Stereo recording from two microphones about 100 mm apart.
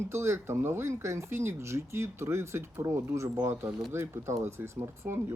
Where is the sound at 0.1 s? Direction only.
25° right (ahead or behind).